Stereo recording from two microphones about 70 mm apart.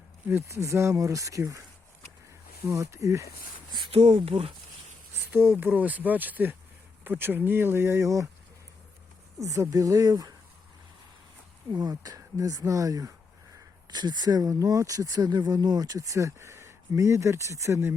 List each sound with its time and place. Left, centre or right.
0.3 s speech: right
2.6 s speech: right
5.3 s speech: right
9.4 s speech: right
11.7 s speech: right
13.8 s speech: right